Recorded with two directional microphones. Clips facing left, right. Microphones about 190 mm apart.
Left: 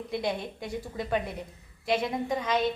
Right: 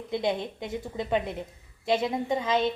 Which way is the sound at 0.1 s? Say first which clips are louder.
Right 4 dB; 25° right (ahead or behind).